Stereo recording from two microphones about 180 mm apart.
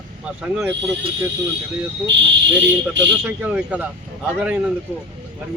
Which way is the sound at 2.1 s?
80° right.